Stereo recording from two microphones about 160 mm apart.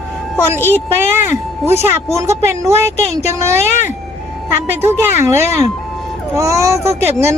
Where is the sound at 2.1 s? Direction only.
20° right (ahead or behind).